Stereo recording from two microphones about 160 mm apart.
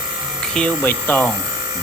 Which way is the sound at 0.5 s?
10° left (ahead or behind).